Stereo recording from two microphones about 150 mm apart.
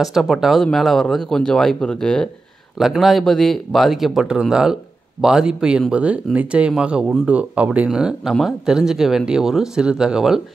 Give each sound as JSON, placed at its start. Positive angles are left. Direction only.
{"t": 0.0, "sound": "speech", "side_deg": 0}